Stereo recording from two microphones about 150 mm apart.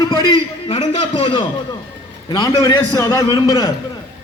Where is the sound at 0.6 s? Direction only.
35° left (ahead or behind).